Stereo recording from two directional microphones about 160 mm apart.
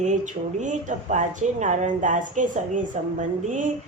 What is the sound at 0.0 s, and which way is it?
Speech, 50° right (ahead or behind).